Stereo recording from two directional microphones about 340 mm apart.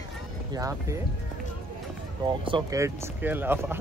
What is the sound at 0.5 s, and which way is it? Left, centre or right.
Speech, centre.